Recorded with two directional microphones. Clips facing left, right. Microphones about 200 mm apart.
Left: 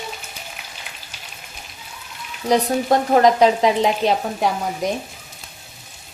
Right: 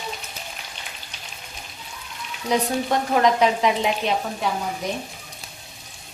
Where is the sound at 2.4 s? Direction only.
40° left (ahead or behind).